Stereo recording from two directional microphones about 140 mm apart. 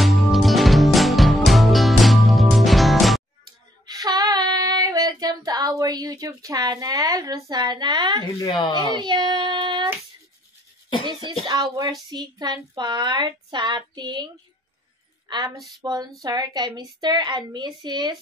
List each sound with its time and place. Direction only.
0.0 s music: centre (ahead or behind)
3.8 s child singing: 30° right (ahead or behind)
8.4 s speech: 25° left (ahead or behind)
8.7 s child singing: 30° right (ahead or behind)
11.1 s child singing: 35° right (ahead or behind)
11.4 s a woman's voice: 30° right (ahead or behind)
12.4 s child singing: 30° right (ahead or behind)
15.2 s a woman's voice: 30° right (ahead or behind)
17.5 s child singing: 30° right (ahead or behind)